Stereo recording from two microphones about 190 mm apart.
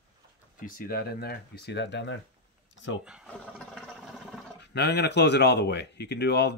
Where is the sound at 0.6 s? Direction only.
50° left (ahead or behind); by 2.2 s 70° left (ahead or behind).